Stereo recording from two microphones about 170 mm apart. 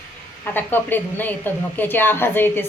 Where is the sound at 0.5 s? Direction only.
10° left (ahead or behind).